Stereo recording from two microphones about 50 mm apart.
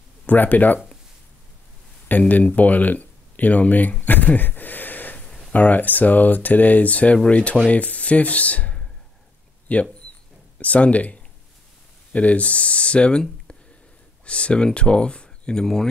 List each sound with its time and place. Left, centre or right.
0.3 s speech: left
2.0 s speech: left
14.2 s speech: left
15.6 s speech: centre